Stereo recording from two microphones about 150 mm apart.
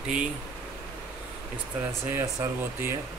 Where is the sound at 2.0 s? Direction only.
15° right (ahead or behind).